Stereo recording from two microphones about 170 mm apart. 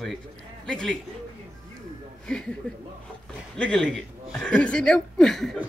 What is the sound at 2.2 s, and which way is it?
Speech, 5° left (ahead or behind).